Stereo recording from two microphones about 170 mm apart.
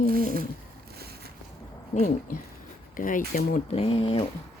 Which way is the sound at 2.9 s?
55° left (ahead or behind).